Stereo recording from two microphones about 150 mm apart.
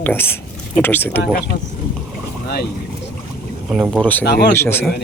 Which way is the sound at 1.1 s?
90° left.